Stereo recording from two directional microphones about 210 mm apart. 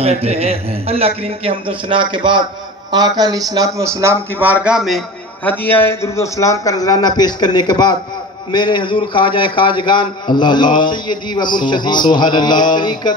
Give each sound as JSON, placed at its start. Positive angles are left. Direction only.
{"t": 0.0, "sound": "a man's voice", "side_deg": -30}